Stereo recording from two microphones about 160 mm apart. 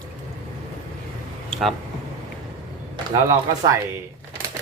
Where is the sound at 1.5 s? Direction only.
Centre (ahead or behind).